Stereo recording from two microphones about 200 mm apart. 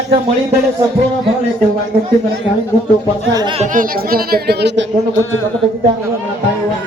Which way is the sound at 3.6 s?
40° right (ahead or behind).